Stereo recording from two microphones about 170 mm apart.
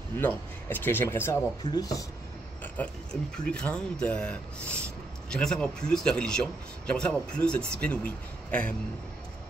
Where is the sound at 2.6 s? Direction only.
5° left (ahead or behind).